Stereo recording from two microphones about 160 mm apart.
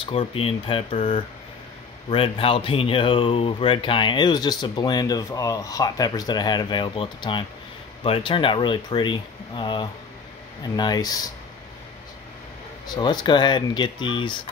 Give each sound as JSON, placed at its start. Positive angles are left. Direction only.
{"t": 0.0, "sound": "speech", "side_deg": 35}
{"t": 12.8, "sound": "speech", "side_deg": 25}